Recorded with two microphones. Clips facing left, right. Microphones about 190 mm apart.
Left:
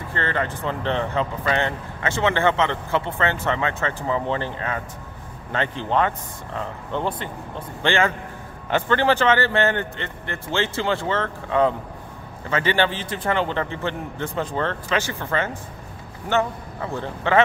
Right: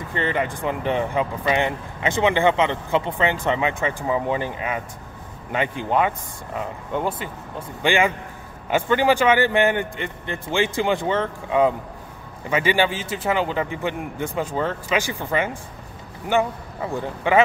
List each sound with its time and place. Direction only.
0.1 s speech: 15° right (ahead or behind)